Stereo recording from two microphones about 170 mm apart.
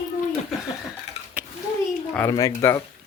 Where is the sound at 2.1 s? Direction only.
15° left (ahead or behind).